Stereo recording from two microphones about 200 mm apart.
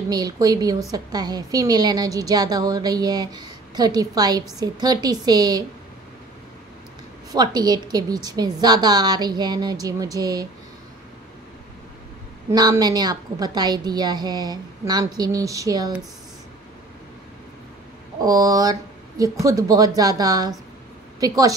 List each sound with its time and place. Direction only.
0.1 s a woman's voice: 20° right (ahead or behind)
7.3 s a woman's voice: 20° right (ahead or behind)
12.4 s a woman's voice: 20° right (ahead or behind)
18.2 s speech: 20° right (ahead or behind)